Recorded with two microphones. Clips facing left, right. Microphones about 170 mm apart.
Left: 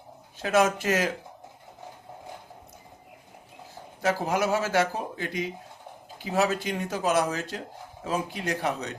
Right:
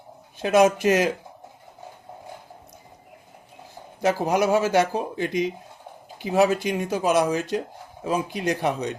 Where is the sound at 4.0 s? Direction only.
20° right (ahead or behind).